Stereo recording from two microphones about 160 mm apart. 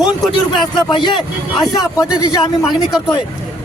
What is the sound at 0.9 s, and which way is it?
Speech, 30° left (ahead or behind).